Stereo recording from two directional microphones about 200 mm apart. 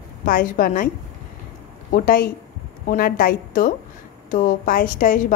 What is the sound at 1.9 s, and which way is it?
A woman's voice, 45° left (ahead or behind).